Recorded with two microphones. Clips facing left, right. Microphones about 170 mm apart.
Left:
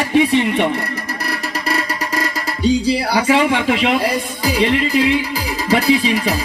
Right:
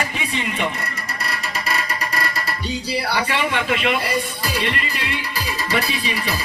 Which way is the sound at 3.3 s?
90° left.